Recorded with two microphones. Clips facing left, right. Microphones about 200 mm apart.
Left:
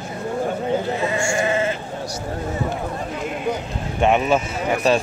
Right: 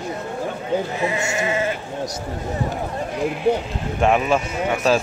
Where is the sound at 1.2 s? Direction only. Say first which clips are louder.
Left 2 dB; 20° right (ahead or behind).